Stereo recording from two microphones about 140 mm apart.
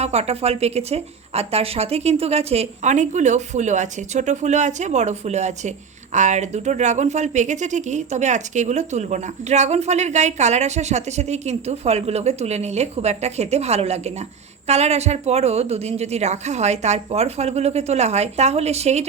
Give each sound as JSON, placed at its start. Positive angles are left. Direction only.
{"t": 0.0, "sound": "speech", "side_deg": -50}